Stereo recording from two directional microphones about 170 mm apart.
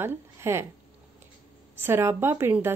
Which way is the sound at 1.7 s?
15° right (ahead or behind).